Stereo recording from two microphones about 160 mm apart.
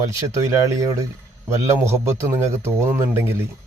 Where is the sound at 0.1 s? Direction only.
20° right (ahead or behind).